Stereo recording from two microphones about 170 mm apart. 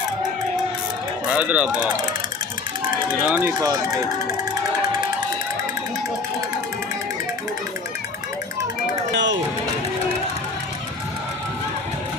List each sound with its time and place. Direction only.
1.3 s speech: 10° right (ahead or behind)
3.2 s speech: 10° right (ahead or behind)
3.6 s speech: 20° right (ahead or behind)
9.1 s music: 90° right